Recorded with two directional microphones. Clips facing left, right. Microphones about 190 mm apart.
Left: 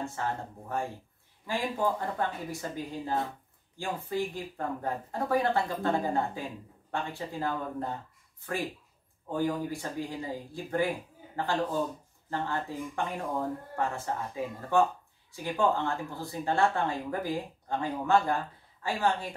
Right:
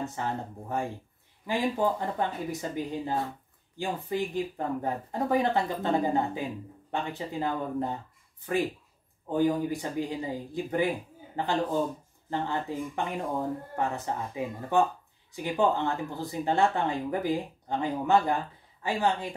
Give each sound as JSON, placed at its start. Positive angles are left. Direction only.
{"t": 0.0, "sound": "speech", "side_deg": -20}